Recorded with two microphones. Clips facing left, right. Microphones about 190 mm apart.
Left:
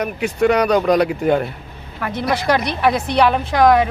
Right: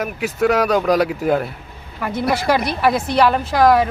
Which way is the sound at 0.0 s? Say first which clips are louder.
Left 2 dB; centre (ahead or behind).